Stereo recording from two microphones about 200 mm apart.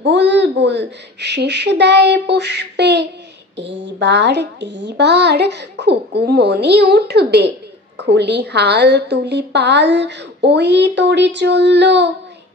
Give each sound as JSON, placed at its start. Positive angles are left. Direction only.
{"t": 0.0, "sound": "a woman's voice", "side_deg": -60}